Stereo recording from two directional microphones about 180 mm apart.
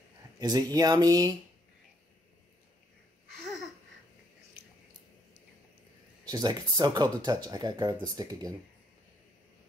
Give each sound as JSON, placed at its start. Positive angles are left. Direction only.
{"t": 0.4, "sound": "speech", "side_deg": -20}
{"t": 6.3, "sound": "speech", "side_deg": -25}